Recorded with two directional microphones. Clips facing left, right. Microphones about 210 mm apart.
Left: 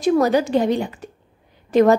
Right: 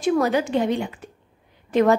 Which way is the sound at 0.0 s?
40° left (ahead or behind).